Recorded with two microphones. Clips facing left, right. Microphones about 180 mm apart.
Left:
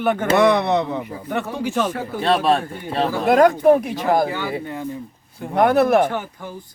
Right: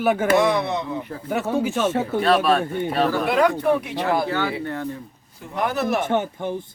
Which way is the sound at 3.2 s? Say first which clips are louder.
Left 9 dB; 45° left (ahead or behind).